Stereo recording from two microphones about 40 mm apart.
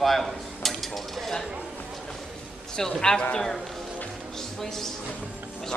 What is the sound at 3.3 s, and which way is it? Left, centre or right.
Speech, centre.